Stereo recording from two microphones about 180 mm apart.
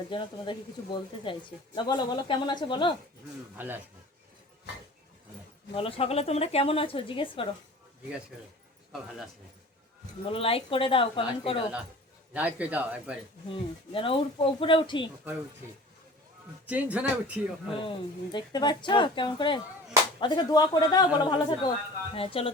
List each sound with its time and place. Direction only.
0.1 s speech: 25° left (ahead or behind)
5.7 s a woman's voice: 30° left (ahead or behind)
10.2 s a woman's voice: 30° left (ahead or behind)
12.3 s speech: 10° right (ahead or behind)
13.5 s speech: 30° left (ahead or behind)
16.6 s speech: 10° right (ahead or behind)
17.7 s a woman's voice: 25° left (ahead or behind)